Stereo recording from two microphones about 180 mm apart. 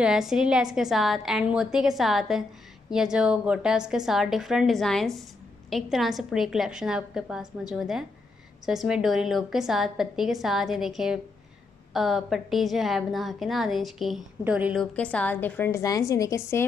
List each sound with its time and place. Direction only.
0.0 s a woman's voice: 5° right (ahead or behind)
15.0 s a woman's voice: 5° left (ahead or behind)